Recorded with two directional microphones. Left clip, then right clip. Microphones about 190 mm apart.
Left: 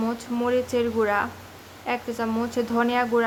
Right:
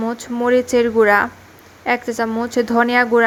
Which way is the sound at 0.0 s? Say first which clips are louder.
Right 6 dB; 20° right (ahead or behind).